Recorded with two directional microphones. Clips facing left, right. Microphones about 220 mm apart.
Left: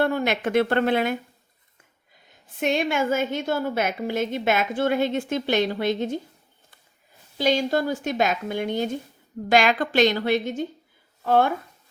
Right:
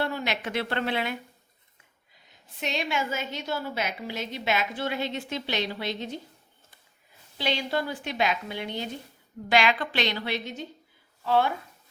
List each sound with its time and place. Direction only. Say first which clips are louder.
0.0 s a woman's voice: left 7 dB; 50° left (ahead or behind)
2.3 s a woman's voice: left 8 dB; 50° left (ahead or behind)
7.3 s a woman's voice: left 7 dB; 45° left (ahead or behind)